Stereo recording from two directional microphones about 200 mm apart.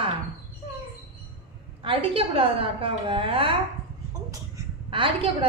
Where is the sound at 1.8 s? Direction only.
25° right (ahead or behind).